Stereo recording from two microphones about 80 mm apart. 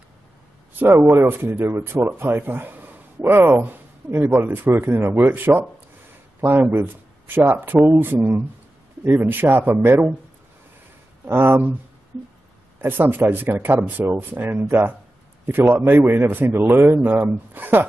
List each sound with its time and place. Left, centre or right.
0.7 s a man's voice: right
11.2 s a man's voice: right
12.8 s a man's voice: right